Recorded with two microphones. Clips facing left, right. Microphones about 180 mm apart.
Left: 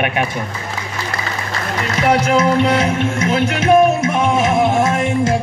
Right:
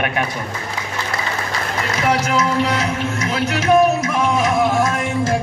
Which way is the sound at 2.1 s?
30° left (ahead or behind).